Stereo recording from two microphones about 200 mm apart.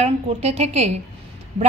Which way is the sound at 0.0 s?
30° right (ahead or behind).